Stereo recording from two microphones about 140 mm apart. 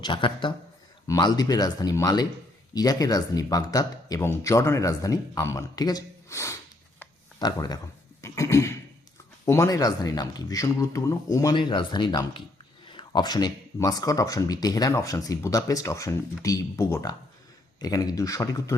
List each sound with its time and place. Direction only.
0.0 s speech: 35° left (ahead or behind)